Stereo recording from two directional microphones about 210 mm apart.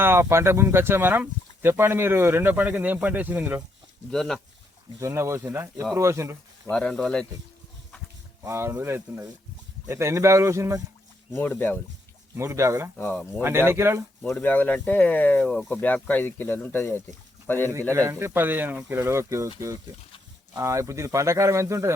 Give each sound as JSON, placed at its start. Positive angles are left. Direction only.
{"t": 0.0, "sound": "speech", "side_deg": -10}
{"t": 4.1, "sound": "speech", "side_deg": 0}
{"t": 4.9, "sound": "speech", "side_deg": -15}
{"t": 6.7, "sound": "speech", "side_deg": 5}
{"t": 8.4, "sound": "speech", "side_deg": -10}
{"t": 11.3, "sound": "speech", "side_deg": 10}
{"t": 12.4, "sound": "speech", "side_deg": -15}
{"t": 13.0, "sound": "speech", "side_deg": 5}
{"t": 13.4, "sound": "speech", "side_deg": -10}
{"t": 14.2, "sound": "speech", "side_deg": 5}
{"t": 17.9, "sound": "speech", "side_deg": -10}